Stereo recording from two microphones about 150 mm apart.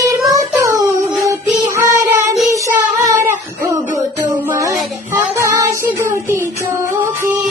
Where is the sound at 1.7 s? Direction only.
20° right (ahead or behind).